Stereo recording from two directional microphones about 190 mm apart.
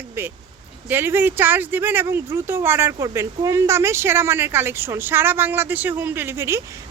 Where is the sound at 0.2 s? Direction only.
15° right (ahead or behind).